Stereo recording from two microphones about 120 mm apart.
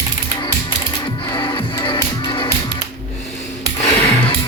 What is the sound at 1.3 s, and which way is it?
Music, 40° left (ahead or behind).